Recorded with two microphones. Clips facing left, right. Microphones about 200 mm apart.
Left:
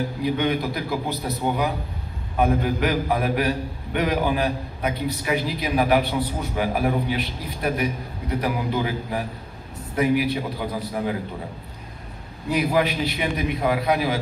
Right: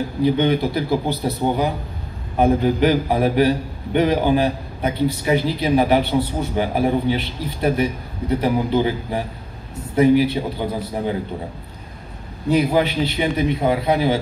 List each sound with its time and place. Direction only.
0.2 s a man's voice: 30° right (ahead or behind)
12.4 s a man's voice: 25° right (ahead or behind)